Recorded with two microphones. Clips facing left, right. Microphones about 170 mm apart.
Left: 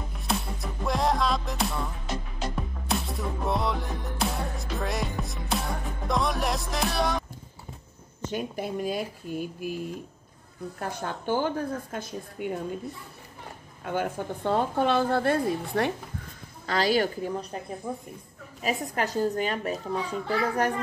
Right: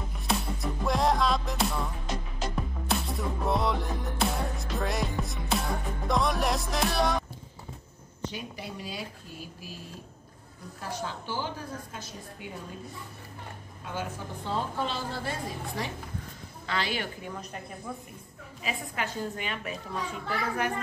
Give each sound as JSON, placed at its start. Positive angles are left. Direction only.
{"t": 0.2, "sound": "music", "side_deg": 0}
{"t": 8.2, "sound": "speech", "side_deg": 50}
{"t": 10.8, "sound": "a woman's voice", "side_deg": 55}
{"t": 13.8, "sound": "a woman's voice", "side_deg": 55}
{"t": 16.6, "sound": "a child's voice", "side_deg": 40}
{"t": 18.6, "sound": "a child's voice", "side_deg": 40}